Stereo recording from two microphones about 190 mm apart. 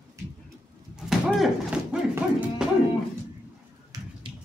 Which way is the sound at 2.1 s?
10° right (ahead or behind).